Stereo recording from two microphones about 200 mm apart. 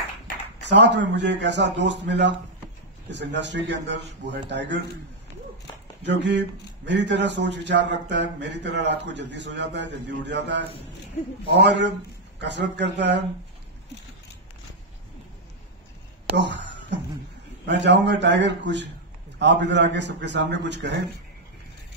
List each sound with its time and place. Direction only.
0.6 s speech: 60° right (ahead or behind)
6.0 s speech: 60° right (ahead or behind)
16.3 s speech: 65° right (ahead or behind)